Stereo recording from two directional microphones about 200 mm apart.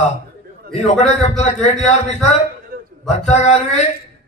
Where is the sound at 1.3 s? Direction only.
35° left (ahead or behind).